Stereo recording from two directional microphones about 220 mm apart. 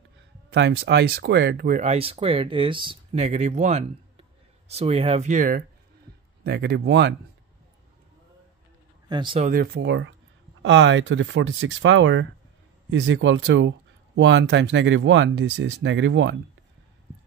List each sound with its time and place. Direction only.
0.5 s speech: 50° right (ahead or behind)
1.8 s speech: 25° right (ahead or behind)
6.4 s speech: 45° right (ahead or behind)
9.1 s speech: 20° right (ahead or behind)
9.5 s speech: 45° right (ahead or behind)